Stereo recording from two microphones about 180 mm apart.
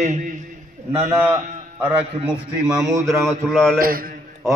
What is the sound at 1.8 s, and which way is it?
A man's voice, 10° right (ahead or behind).